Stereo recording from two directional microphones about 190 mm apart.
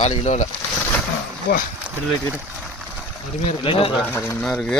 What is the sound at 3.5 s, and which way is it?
Speech, 30° left (ahead or behind).